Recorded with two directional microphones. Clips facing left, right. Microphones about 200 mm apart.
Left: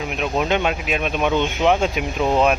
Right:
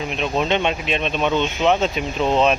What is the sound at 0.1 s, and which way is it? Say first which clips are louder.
Speech: even; 10° left (ahead or behind).